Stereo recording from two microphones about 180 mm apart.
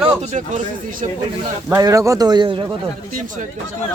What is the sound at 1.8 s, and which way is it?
Speech, 20° right (ahead or behind).